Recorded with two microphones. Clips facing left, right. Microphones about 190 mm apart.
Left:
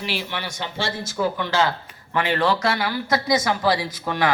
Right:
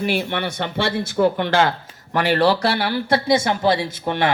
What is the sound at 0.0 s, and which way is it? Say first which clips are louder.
Speech: right 7 dB; 55° right (ahead or behind).